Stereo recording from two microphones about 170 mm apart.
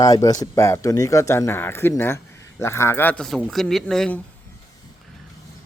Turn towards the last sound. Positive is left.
turn(degrees=5)  # may be behind; listen again after turning